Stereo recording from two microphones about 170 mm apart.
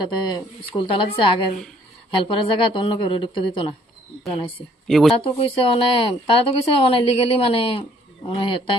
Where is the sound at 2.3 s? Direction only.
30° left (ahead or behind).